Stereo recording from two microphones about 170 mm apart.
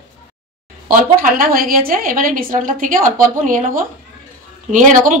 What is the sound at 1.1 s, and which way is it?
A woman's voice, 60° right (ahead or behind).